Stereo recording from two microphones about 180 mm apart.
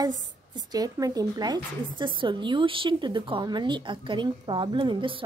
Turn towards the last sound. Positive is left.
turn(degrees=-25)  # may be behind; listen again after turning